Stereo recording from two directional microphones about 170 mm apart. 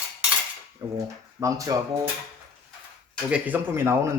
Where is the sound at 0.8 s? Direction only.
20° right (ahead or behind).